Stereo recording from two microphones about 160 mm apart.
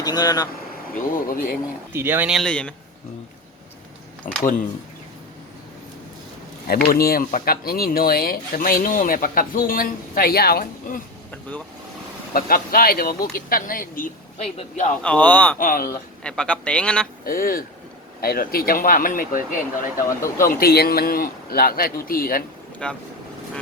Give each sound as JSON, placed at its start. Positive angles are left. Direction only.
{"t": 0.0, "sound": "speech", "side_deg": 25}
{"t": 1.1, "sound": "speech", "side_deg": 60}
{"t": 1.9, "sound": "speech", "side_deg": -15}
{"t": 2.3, "sound": "a man's voice", "side_deg": 5}
{"t": 4.2, "sound": "speech", "side_deg": 55}
{"t": 6.8, "sound": "a man's voice", "side_deg": 70}
{"t": 12.3, "sound": "speech", "side_deg": 65}
{"t": 14.3, "sound": "a man's voice", "side_deg": 45}
{"t": 15.0, "sound": "speech", "side_deg": 10}
{"t": 15.5, "sound": "speech", "side_deg": 65}
{"t": 16.2, "sound": "speech", "side_deg": 5}
{"t": 17.2, "sound": "a man's voice", "side_deg": 65}
{"t": 22.8, "sound": "a man's voice", "side_deg": 5}